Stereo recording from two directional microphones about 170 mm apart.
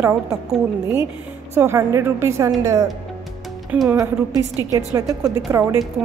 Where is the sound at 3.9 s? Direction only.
20° right (ahead or behind).